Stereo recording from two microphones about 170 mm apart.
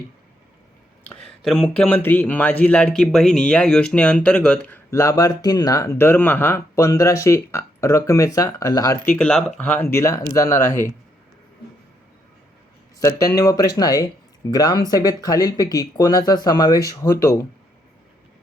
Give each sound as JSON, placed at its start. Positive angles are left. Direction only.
{"t": 1.0, "sound": "speech", "side_deg": 5}
{"t": 9.1, "sound": "speech", "side_deg": 5}
{"t": 13.0, "sound": "speech", "side_deg": 20}